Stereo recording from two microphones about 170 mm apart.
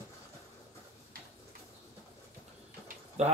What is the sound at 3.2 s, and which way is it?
Speech, 40° right (ahead or behind).